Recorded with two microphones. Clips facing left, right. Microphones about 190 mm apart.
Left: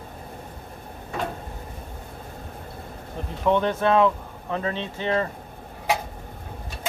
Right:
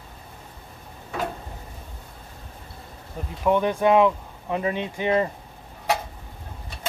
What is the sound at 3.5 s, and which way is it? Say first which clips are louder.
Speech: right 1 dB; 10° right (ahead or behind).